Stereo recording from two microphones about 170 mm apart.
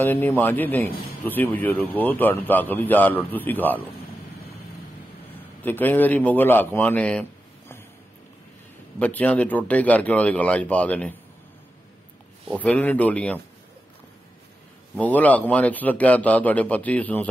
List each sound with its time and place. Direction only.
0.0 s speech: 10° left (ahead or behind)
5.6 s a man's voice: 10° left (ahead or behind)
9.0 s speech: 10° left (ahead or behind)
12.4 s speech: 5° left (ahead or behind)
15.0 s speech: 10° left (ahead or behind)